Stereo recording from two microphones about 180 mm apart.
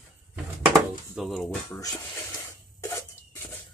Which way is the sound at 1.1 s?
Centre (ahead or behind).